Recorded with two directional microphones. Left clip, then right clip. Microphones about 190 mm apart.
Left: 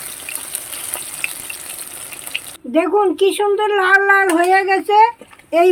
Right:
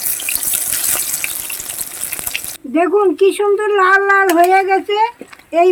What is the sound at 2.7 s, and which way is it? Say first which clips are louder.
Speech: right 2 dB; centre (ahead or behind).